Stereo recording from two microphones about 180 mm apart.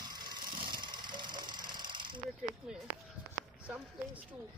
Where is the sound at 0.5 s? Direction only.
25° right (ahead or behind).